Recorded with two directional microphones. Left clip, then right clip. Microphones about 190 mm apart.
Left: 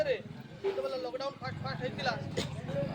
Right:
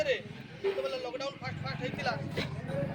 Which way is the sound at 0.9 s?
Centre (ahead or behind).